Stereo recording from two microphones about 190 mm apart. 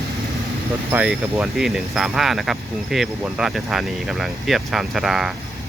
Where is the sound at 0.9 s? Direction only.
5° right (ahead or behind).